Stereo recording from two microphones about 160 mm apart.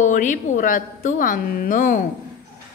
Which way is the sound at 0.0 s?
50° left (ahead or behind).